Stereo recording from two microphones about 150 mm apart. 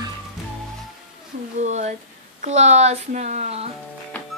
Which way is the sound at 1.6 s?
50° right (ahead or behind).